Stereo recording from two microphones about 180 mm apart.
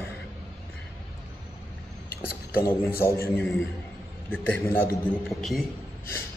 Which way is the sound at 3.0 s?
15° left (ahead or behind).